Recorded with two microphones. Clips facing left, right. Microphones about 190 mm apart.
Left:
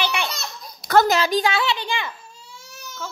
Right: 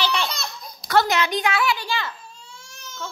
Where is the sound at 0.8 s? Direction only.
40° left (ahead or behind); by 2.1 s 15° left (ahead or behind).